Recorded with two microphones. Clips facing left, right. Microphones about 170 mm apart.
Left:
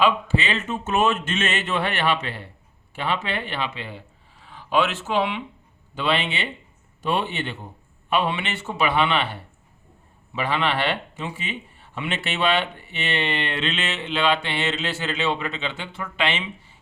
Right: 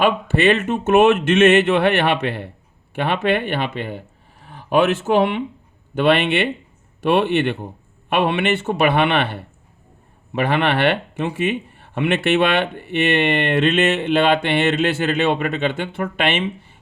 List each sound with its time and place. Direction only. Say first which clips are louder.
0.0 s speech: right 5 dB; 55° right (ahead or behind)